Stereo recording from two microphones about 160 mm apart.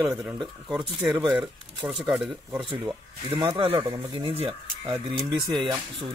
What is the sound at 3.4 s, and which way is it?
Speech, 30° right (ahead or behind).